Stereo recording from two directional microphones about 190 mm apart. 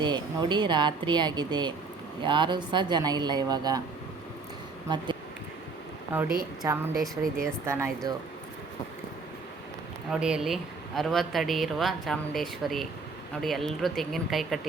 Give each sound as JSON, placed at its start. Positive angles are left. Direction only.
{"t": 0.0, "sound": "speech", "side_deg": -25}
{"t": 6.1, "sound": "speech", "side_deg": -10}
{"t": 10.1, "sound": "speech", "side_deg": -5}